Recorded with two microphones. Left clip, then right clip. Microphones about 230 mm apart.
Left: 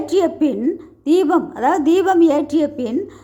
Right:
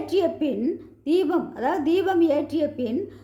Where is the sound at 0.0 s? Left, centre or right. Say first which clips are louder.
Left 6 dB; centre.